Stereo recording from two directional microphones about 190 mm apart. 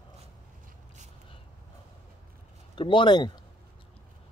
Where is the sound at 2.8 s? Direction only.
25° left (ahead or behind).